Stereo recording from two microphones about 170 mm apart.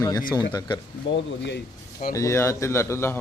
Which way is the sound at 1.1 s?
90° left.